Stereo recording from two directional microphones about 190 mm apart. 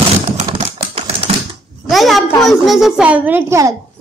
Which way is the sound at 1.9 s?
Centre (ahead or behind).